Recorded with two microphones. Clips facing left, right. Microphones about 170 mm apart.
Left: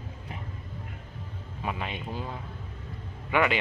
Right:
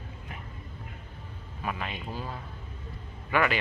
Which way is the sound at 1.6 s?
20° left (ahead or behind).